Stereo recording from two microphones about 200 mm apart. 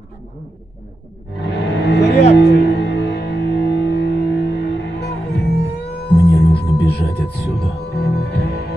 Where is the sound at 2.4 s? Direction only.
55° left (ahead or behind).